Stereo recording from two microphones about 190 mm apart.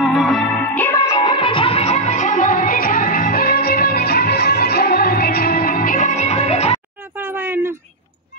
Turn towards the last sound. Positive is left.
turn(degrees=-10)  # may be behind; listen again after turning